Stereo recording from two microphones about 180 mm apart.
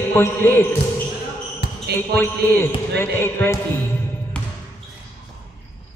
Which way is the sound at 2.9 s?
15° left (ahead or behind).